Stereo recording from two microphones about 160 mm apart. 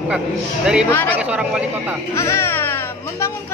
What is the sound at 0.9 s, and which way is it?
Speech, 10° left (ahead or behind).